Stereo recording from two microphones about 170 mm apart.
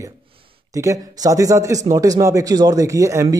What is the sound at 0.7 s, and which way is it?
Speech, 20° right (ahead or behind).